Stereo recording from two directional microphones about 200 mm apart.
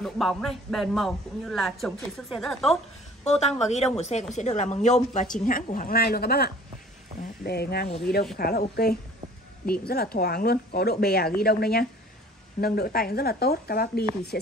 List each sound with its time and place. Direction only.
0.0 s speech: centre (ahead or behind)
3.3 s a woman's voice: 35° left (ahead or behind); by 14.5 s 50° left (ahead or behind)